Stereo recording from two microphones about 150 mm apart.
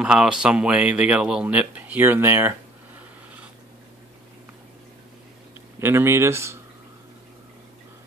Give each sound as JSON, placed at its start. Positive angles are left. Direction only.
{"t": 0.0, "sound": "speech", "side_deg": -5}
{"t": 5.8, "sound": "speech", "side_deg": -15}